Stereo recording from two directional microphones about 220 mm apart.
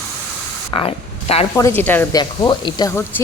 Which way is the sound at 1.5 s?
10° left (ahead or behind).